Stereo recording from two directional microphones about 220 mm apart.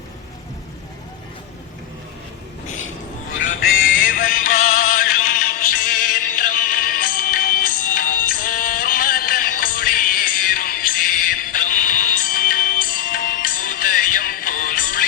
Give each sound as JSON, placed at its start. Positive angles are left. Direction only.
{"t": 3.9, "sound": "music", "side_deg": 40}